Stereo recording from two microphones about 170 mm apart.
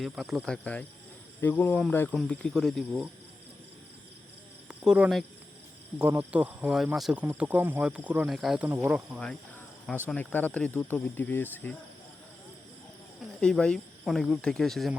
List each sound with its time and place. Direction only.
0.0 s speech: centre (ahead or behind)
4.7 s speech: 5° right (ahead or behind)
10.1 s speech: 10° left (ahead or behind)
13.4 s speech: 5° left (ahead or behind)